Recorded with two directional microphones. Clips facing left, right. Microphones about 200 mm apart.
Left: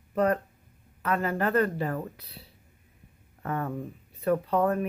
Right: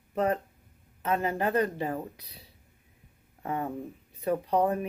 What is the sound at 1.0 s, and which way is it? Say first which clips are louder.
Speech: left 1 dB; 20° right (ahead or behind).